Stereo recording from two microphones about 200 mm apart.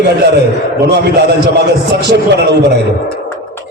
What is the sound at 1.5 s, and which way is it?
A man's voice, 55° right (ahead or behind).